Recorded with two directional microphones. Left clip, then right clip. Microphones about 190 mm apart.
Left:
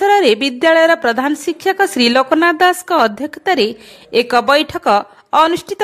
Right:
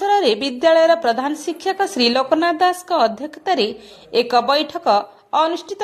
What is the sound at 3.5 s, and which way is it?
Speech, 90° left.